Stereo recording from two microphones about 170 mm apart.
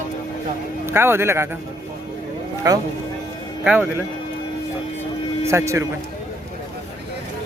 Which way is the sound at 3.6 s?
5° right (ahead or behind).